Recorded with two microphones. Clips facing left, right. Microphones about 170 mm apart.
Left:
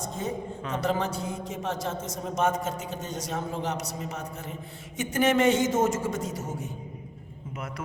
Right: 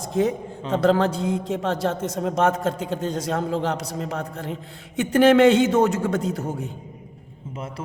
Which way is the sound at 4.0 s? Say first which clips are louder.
Right 7 dB; 75° right (ahead or behind).